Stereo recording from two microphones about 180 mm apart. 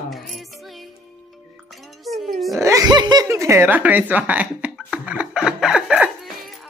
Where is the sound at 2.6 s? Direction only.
20° right (ahead or behind).